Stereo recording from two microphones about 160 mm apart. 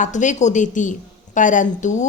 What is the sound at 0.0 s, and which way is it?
A woman's voice, 50° left (ahead or behind).